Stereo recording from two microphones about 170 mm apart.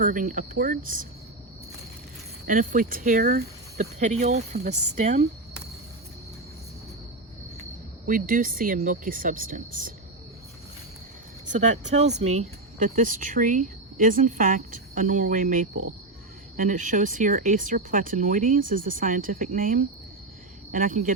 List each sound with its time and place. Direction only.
0.0 s speech: 55° right (ahead or behind)
2.5 s speech: 55° right (ahead or behind)
8.0 s speech: 55° right (ahead or behind)
11.5 s speech: 45° right (ahead or behind)